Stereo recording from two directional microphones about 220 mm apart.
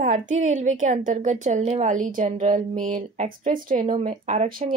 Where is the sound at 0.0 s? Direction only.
35° right (ahead or behind).